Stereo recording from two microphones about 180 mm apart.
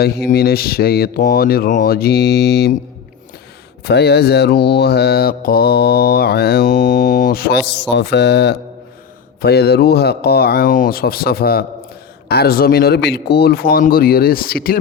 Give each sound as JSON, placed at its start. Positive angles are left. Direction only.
{"t": 0.0, "sound": "mantra", "side_deg": 60}
{"t": 3.8, "sound": "mantra", "side_deg": 65}
{"t": 7.7, "sound": "mantra", "side_deg": 75}